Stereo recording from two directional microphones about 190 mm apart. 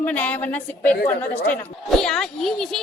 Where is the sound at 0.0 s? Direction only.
10° left (ahead or behind).